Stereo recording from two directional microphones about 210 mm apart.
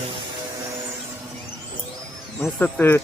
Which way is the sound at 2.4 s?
5° left (ahead or behind).